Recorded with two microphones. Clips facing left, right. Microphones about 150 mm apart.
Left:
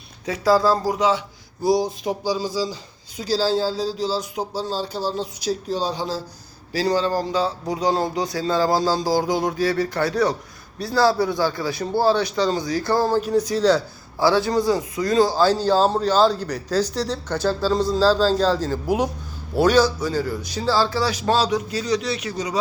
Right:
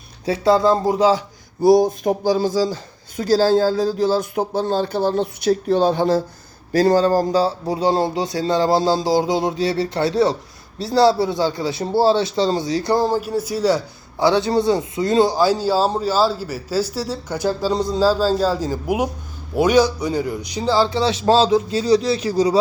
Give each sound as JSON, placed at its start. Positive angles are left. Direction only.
{"t": 0.3, "sound": "a man's voice", "side_deg": -25}
{"t": 1.6, "sound": "a man's voice", "side_deg": -50}
{"t": 15.4, "sound": "a man's voice", "side_deg": -10}